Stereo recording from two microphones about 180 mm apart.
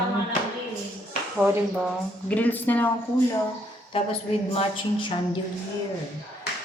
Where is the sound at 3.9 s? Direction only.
30° left (ahead or behind).